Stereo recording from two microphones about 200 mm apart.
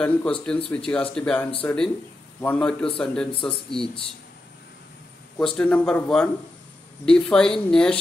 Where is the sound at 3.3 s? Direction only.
25° left (ahead or behind).